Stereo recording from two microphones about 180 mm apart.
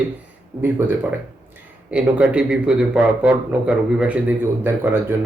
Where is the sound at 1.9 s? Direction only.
5° right (ahead or behind).